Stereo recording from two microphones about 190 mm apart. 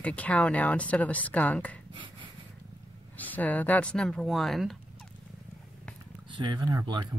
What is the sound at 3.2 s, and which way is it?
Speech, 10° left (ahead or behind).